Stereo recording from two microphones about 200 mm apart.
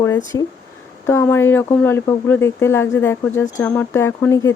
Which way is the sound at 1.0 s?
15° left (ahead or behind).